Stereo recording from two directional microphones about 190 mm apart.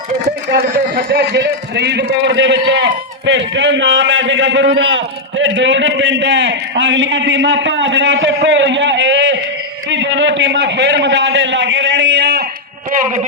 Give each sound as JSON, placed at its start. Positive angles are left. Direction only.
{"t": 1.1, "sound": "a man's voice", "side_deg": -60}
{"t": 12.9, "sound": "speech", "side_deg": -40}